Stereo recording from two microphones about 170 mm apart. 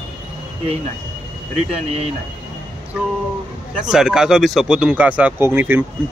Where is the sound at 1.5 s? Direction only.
40° right (ahead or behind).